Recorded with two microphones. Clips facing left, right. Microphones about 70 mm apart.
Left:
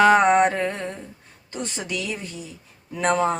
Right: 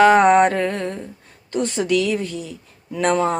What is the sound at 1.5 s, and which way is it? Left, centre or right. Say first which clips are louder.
Mantra: right 9 dB; centre.